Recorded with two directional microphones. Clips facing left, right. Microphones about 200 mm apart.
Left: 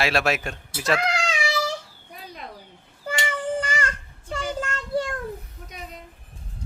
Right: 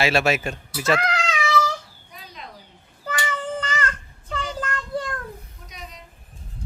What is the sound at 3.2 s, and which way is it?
Child singing, 15° left (ahead or behind).